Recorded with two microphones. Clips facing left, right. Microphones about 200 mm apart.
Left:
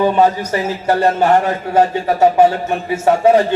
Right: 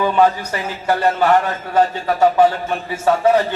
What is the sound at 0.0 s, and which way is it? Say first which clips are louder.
Speech: left 2 dB; 25° left (ahead or behind).